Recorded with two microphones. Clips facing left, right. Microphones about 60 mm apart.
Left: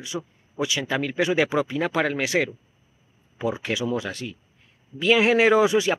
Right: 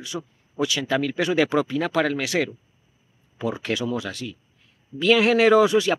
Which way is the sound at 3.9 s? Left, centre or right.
Left.